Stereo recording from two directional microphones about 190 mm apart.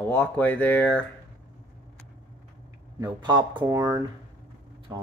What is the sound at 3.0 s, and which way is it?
Speech, 25° right (ahead or behind).